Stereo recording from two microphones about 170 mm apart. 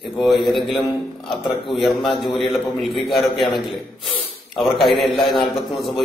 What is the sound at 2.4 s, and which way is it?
Speech, 30° left (ahead or behind).